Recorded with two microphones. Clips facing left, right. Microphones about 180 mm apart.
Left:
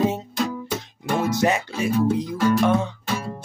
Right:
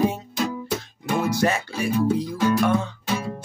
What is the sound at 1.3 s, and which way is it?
Music, 20° left (ahead or behind).